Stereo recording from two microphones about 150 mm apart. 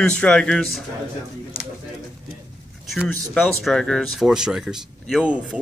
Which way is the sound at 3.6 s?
5° left (ahead or behind).